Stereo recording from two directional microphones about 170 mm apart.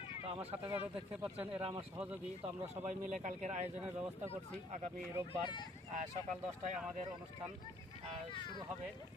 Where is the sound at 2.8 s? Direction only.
45° right (ahead or behind).